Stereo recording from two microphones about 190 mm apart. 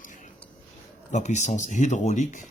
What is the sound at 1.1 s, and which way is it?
Speech, 40° left (ahead or behind).